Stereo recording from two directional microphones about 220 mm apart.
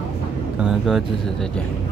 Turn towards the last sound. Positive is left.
turn(degrees=0)  # may be behind; listen again after turning